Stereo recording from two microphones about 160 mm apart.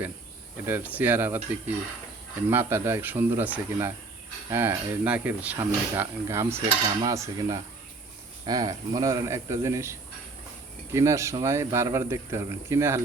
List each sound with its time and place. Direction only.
0.6 s speech: 10° right (ahead or behind)